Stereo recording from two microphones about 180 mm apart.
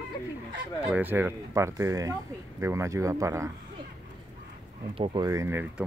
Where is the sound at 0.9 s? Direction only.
10° right (ahead or behind).